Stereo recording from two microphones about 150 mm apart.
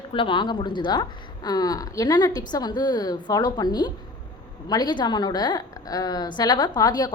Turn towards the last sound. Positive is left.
turn(degrees=25)  # may be behind; listen again after turning